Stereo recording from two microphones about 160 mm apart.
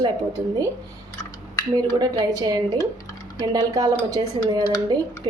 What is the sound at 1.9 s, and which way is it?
A woman's voice, 25° right (ahead or behind).